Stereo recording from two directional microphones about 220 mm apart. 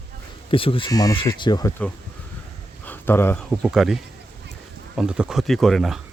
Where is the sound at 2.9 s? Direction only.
10° left (ahead or behind).